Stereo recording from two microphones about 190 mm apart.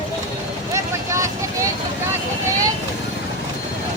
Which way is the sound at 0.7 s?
15° right (ahead or behind).